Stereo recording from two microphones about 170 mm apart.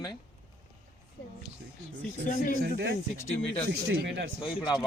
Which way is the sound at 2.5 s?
65° right (ahead or behind).